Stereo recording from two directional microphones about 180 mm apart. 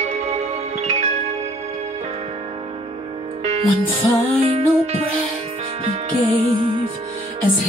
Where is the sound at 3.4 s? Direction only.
40° right (ahead or behind).